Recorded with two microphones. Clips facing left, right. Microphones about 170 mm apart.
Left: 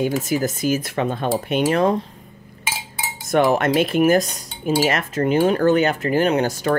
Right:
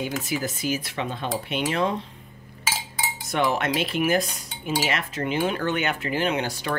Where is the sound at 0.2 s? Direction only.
45° left (ahead or behind).